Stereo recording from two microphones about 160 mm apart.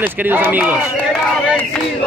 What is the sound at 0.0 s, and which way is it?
Speech, 10° right (ahead or behind).